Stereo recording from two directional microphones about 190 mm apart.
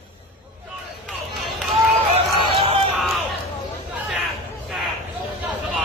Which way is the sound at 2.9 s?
Centre (ahead or behind).